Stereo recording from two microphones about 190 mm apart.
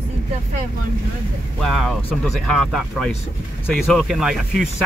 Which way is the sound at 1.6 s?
Centre (ahead or behind).